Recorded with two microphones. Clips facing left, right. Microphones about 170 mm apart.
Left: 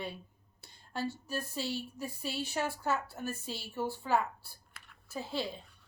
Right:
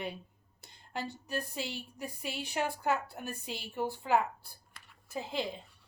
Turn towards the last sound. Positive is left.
turn(degrees=-15)  # may be behind; listen again after turning